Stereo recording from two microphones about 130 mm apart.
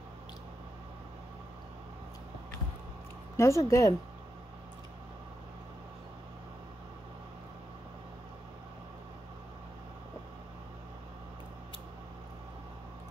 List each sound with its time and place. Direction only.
3.3 s speech: 25° left (ahead or behind)